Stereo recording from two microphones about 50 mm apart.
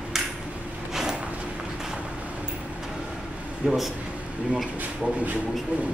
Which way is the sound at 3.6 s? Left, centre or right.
Centre.